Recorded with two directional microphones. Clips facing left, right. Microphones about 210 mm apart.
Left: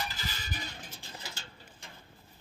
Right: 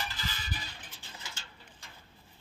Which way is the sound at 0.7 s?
40° left (ahead or behind).